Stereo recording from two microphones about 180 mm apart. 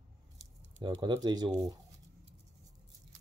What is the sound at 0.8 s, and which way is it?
Speech, 25° right (ahead or behind).